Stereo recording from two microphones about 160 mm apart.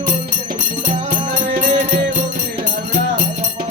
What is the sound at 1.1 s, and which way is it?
Music, 55° right (ahead or behind).